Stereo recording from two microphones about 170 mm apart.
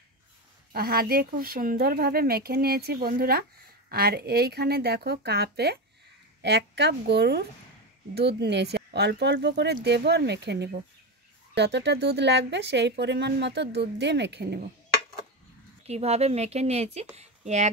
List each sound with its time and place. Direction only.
0.7 s speech: 65° right (ahead or behind); by 9.8 s 90° right
9.8 s speech: 80° right
15.9 s speech: 40° right (ahead or behind)